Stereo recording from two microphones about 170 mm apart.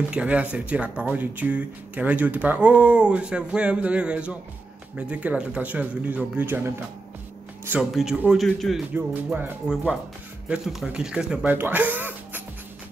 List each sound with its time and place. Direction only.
0.1 s speech: 10° right (ahead or behind)
7.9 s a man's voice: 5° right (ahead or behind)
8.9 s speech: 10° right (ahead or behind)